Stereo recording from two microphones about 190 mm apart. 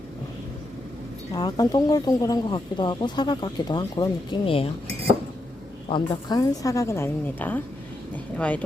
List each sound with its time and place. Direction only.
1.3 s speech: 20° left (ahead or behind)
5.9 s a woman's voice: 25° left (ahead or behind); by 8.6 s 5° left (ahead or behind)